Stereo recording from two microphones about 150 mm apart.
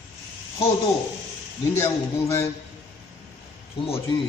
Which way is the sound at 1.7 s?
20° left (ahead or behind).